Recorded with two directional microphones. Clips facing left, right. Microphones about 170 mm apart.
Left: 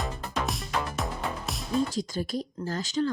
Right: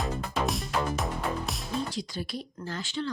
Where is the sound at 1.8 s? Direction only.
45° left (ahead or behind).